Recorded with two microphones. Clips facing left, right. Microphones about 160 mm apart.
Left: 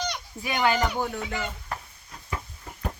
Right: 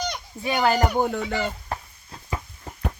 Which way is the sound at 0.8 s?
55° right (ahead or behind).